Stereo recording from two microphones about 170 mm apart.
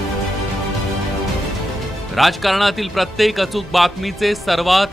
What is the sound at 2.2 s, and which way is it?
A man's voice, centre (ahead or behind).